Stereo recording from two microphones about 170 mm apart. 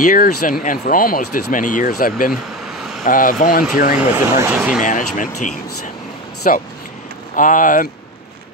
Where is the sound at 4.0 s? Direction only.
15° right (ahead or behind).